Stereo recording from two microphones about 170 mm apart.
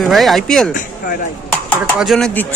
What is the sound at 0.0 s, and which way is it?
Speech, centre (ahead or behind).